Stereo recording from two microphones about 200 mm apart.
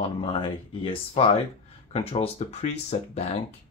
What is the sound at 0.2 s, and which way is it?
Speech, 25° left (ahead or behind).